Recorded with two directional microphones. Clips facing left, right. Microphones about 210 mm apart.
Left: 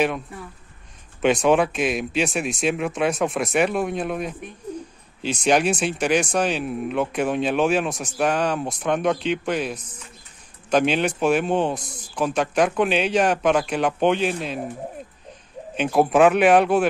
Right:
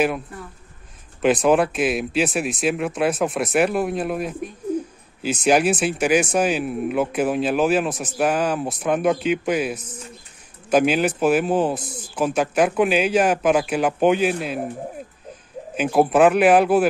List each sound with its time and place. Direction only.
0.0 s speech: centre (ahead or behind)
4.7 s bird: 5° right (ahead or behind)
5.2 s speech: 5° right (ahead or behind)
15.7 s speech: 5° right (ahead or behind)